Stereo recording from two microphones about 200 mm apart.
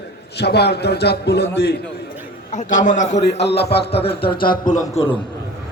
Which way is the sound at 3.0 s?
60° left (ahead or behind).